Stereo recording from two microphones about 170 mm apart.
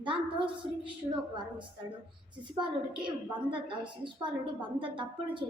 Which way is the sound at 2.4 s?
30° right (ahead or behind).